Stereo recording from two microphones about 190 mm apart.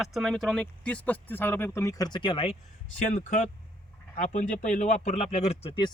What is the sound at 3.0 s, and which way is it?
Speech, 45° left (ahead or behind).